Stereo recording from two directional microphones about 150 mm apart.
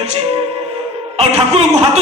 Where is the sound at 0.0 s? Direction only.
45° right (ahead or behind).